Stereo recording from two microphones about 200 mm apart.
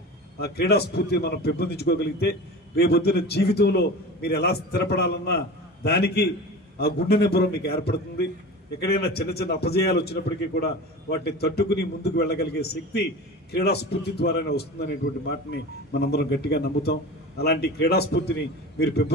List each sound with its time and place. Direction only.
0.4 s a man's voice: 55° left (ahead or behind)